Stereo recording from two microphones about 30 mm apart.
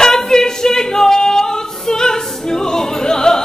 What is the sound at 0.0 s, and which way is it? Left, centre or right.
A capella, centre.